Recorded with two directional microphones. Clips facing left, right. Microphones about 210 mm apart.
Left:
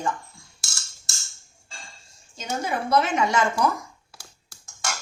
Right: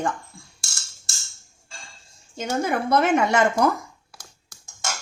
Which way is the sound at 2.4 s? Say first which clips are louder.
Right 4 dB; 55° right (ahead or behind).